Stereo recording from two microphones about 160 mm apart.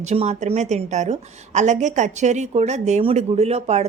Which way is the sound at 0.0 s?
45° right (ahead or behind).